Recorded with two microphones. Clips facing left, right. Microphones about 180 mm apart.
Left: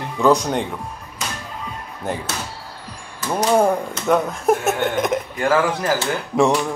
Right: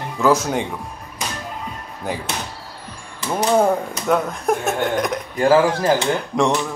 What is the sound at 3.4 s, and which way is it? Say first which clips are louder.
Speech: even; 10° left (ahead or behind).